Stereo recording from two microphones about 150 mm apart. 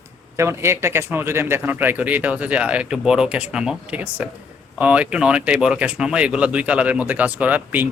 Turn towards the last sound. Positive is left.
turn(degrees=-10)  # may be behind; listen again after turning